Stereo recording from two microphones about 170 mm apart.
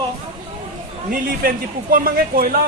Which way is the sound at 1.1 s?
60° right (ahead or behind).